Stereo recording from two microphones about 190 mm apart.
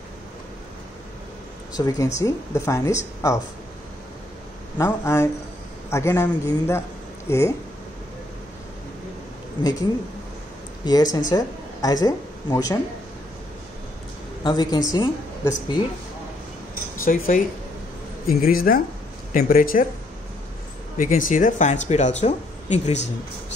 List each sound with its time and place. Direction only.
1.7 s a man's voice: 20° left (ahead or behind)
4.7 s a man's voice: 15° left (ahead or behind)
9.6 s a man's voice: 20° left (ahead or behind)
10.9 s speech: 20° left (ahead or behind)
14.4 s speech: 20° left (ahead or behind)
16.9 s speech: 45° left (ahead or behind)
21.0 s speech: 45° left (ahead or behind)